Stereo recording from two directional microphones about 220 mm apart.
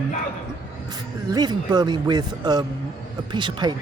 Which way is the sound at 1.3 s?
20° right (ahead or behind).